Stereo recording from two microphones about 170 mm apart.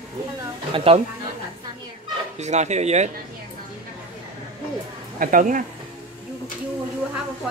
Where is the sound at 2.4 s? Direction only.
40° right (ahead or behind).